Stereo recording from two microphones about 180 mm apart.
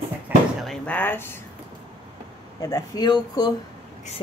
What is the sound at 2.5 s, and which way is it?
Speech, 20° left (ahead or behind).